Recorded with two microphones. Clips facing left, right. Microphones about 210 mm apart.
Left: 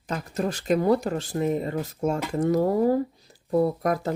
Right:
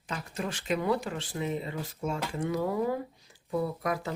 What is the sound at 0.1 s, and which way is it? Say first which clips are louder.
Speech: left 7 dB; 40° left (ahead or behind).